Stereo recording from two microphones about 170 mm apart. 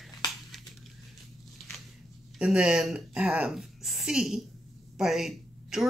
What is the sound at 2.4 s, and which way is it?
A woman's voice, 5° right (ahead or behind).